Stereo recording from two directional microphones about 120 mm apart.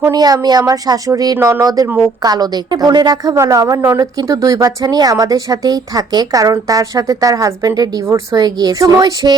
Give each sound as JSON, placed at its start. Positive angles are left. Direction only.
{"t": 0.1, "sound": "a woman's voice", "side_deg": -35}